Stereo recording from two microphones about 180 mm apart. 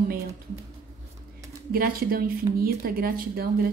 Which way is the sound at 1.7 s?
55° right (ahead or behind).